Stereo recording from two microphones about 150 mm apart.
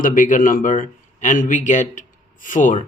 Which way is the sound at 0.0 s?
60° left (ahead or behind).